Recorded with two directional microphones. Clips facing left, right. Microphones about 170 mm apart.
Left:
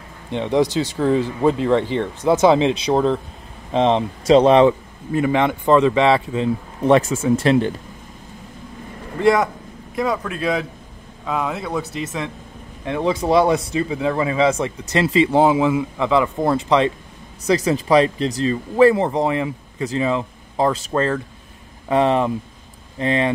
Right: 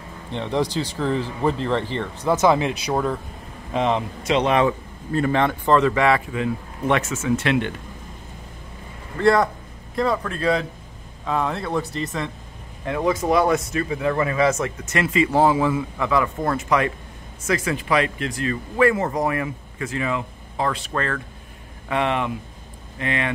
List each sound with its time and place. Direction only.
0.3 s speech: 15° left (ahead or behind)
5.1 s speech: 15° left (ahead or behind); by 7.7 s 35° left (ahead or behind)
9.9 s speech: 10° left (ahead or behind)
12.8 s speech: 20° left (ahead or behind)
14.9 s speech: 30° left (ahead or behind)